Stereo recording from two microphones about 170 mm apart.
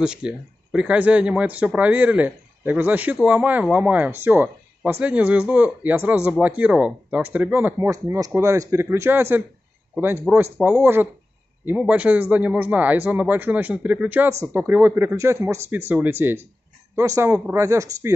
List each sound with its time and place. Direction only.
0.0 s speech: 5° right (ahead or behind)